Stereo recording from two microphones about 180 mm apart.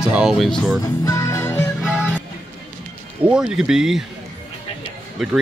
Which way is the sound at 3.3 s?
5° right (ahead or behind).